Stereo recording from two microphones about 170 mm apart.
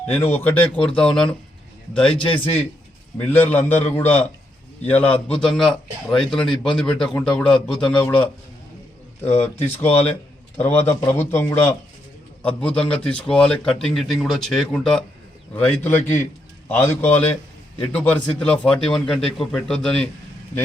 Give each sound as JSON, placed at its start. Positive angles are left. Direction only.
{"t": 0.2, "sound": "speech", "side_deg": 10}
{"t": 2.2, "sound": "a man's voice", "side_deg": 30}
{"t": 3.2, "sound": "speech", "side_deg": 10}
{"t": 9.4, "sound": "a man's voice", "side_deg": 10}